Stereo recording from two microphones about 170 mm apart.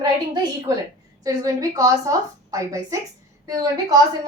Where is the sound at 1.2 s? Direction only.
20° right (ahead or behind).